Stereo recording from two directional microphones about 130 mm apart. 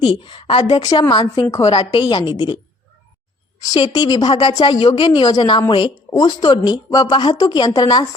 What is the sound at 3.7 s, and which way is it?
A woman's voice, 30° left (ahead or behind).